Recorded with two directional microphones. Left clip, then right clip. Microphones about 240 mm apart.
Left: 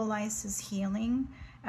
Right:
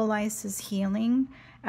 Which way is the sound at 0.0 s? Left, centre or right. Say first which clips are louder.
Right 6 dB; right.